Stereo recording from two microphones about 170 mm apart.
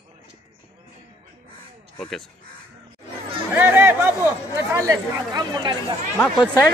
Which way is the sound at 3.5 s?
10° right (ahead or behind).